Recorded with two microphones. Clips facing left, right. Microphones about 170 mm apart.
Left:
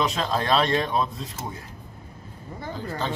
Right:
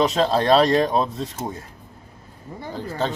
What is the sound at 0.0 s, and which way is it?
Speech, 35° right (ahead or behind).